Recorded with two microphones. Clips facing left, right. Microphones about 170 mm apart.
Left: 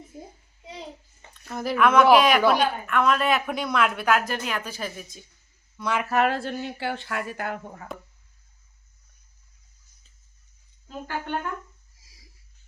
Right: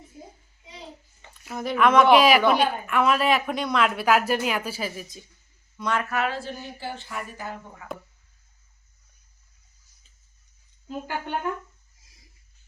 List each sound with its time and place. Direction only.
1.3 s a woman's voice: centre (ahead or behind)
5.8 s speech: 10° left (ahead or behind)
6.1 s speech: 50° left (ahead or behind); by 7.6 s 65° left (ahead or behind)